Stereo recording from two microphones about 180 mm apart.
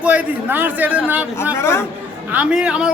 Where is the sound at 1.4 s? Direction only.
15° left (ahead or behind).